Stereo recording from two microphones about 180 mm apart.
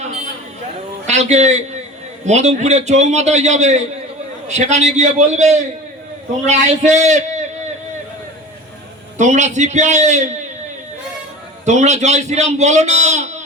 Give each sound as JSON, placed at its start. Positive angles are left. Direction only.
{"t": 1.0, "sound": "a man's voice", "side_deg": -40}
{"t": 9.1, "sound": "a man's voice", "side_deg": -40}
{"t": 11.6, "sound": "a man's voice", "side_deg": -40}